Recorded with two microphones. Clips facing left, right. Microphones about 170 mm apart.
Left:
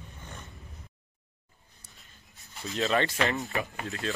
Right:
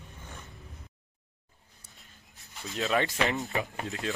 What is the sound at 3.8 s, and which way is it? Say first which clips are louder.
Speech: even; 20° right (ahead or behind).